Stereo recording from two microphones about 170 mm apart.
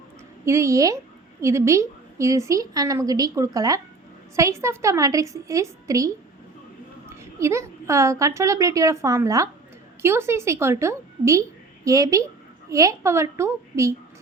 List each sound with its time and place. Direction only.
0.4 s a woman's voice: 15° right (ahead or behind)
7.1 s a woman's voice: 15° right (ahead or behind)